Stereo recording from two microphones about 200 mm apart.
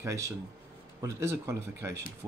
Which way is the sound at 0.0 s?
15° right (ahead or behind).